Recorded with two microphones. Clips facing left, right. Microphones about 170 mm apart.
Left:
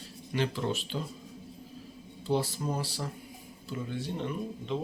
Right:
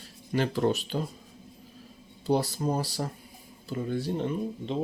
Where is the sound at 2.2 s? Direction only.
40° right (ahead or behind).